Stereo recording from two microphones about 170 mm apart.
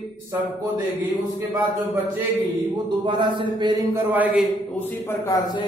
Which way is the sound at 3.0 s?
25° right (ahead or behind).